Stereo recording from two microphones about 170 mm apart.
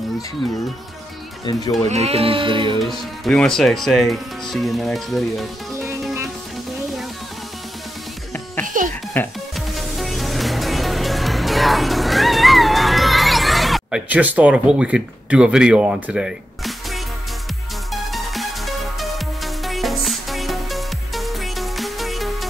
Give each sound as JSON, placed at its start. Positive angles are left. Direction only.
{"t": 1.4, "sound": "speech", "side_deg": 25}
{"t": 1.9, "sound": "speech", "side_deg": -40}
{"t": 2.8, "sound": "speech", "side_deg": 5}
{"t": 8.6, "sound": "a sound", "side_deg": -55}
{"t": 9.1, "sound": "speech", "side_deg": 10}
{"t": 9.8, "sound": "music", "side_deg": 0}
{"t": 18.1, "sound": "music", "side_deg": 0}